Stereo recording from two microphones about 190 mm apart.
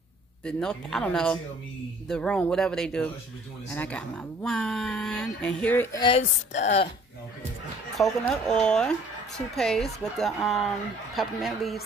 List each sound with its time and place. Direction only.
0.5 s speech: 5° left (ahead or behind)
5.9 s speech: 25° left (ahead or behind)
6.5 s speech: 35° left (ahead or behind)
8.0 s speech: 5° left (ahead or behind)